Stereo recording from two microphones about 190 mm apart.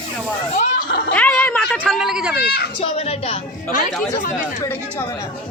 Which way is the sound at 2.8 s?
35° left (ahead or behind).